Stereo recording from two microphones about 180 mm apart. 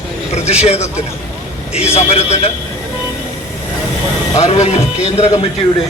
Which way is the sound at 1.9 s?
35° left (ahead or behind).